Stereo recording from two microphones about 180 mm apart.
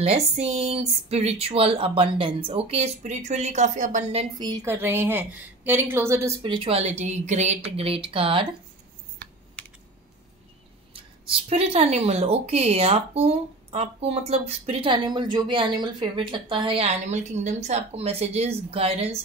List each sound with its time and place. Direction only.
0.0 s speech: 35° right (ahead or behind)
4.4 s a woman's voice: 20° right (ahead or behind)
6.4 s speech: 30° right (ahead or behind)
10.9 s speech: 30° right (ahead or behind)